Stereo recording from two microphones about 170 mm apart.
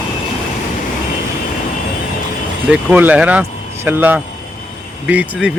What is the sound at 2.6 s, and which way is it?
Speech, 10° right (ahead or behind).